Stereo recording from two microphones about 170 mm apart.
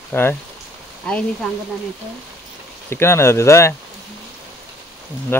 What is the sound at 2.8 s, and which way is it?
Speech, 15° left (ahead or behind).